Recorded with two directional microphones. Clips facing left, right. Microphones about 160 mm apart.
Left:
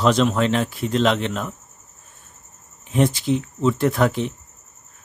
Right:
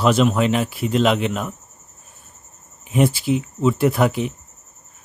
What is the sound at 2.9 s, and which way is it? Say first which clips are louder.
Speech: right 1 dB; 10° right (ahead or behind).